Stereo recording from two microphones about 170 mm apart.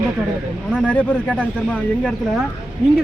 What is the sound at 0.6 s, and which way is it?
A man's voice, 5° left (ahead or behind).